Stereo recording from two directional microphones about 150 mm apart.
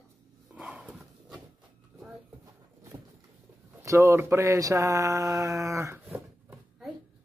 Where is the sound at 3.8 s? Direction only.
20° right (ahead or behind).